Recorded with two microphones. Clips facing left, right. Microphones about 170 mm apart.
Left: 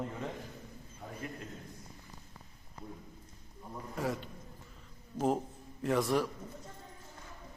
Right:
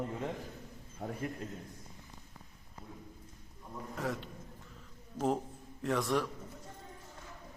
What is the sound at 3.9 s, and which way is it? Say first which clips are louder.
Speech: left 2 dB; centre (ahead or behind).